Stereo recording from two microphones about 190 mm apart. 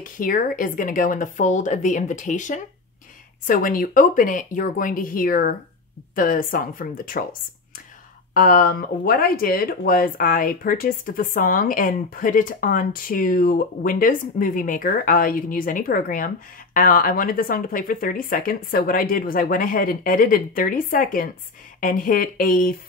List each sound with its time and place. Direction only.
0.2 s speech: 45° left (ahead or behind)
8.4 s speech: 50° left (ahead or behind)